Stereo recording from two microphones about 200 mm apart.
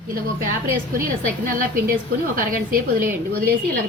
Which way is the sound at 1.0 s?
45° right (ahead or behind).